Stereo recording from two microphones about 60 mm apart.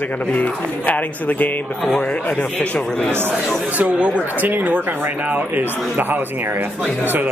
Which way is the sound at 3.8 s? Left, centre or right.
Right.